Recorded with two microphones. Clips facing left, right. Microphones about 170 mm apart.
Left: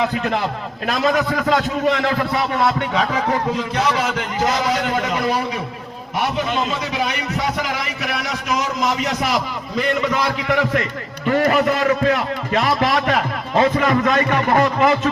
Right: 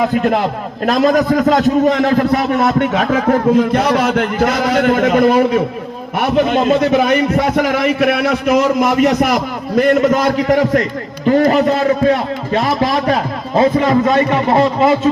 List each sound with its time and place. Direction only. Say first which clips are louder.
0.0 s a man's voice: right 6 dB; 50° right (ahead or behind); by 15.1 s 25° right (ahead or behind)